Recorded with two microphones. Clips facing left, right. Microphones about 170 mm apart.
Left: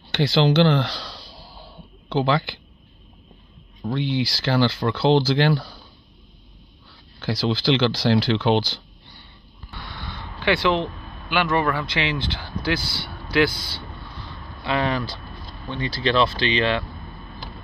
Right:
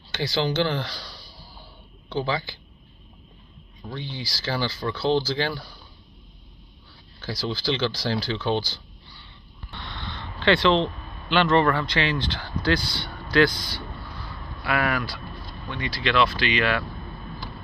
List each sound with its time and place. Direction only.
0.1 s speech: 65° left (ahead or behind)
3.9 s speech: 70° left (ahead or behind)
7.2 s speech: 70° left (ahead or behind)
10.0 s a sound: 10° left (ahead or behind)
11.9 s speech: 15° left (ahead or behind)
12.8 s speech: 20° right (ahead or behind)
14.6 s speech: 20° left (ahead or behind)